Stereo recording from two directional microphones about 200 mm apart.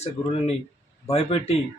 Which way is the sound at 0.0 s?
30° left (ahead or behind).